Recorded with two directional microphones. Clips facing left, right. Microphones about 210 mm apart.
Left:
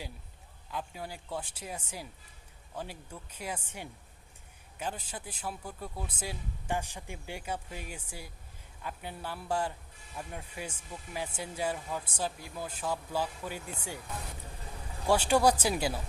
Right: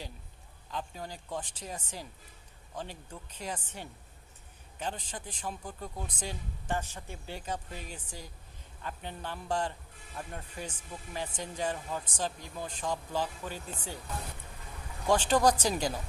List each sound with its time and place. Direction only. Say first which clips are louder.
0.7 s speech: even; 10° left (ahead or behind)
15.0 s speech: even; 10° left (ahead or behind)